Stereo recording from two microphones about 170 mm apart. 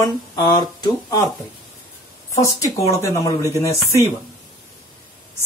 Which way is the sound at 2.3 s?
15° left (ahead or behind).